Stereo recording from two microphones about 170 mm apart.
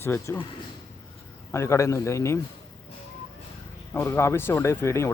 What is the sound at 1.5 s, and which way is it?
Speech, 15° left (ahead or behind).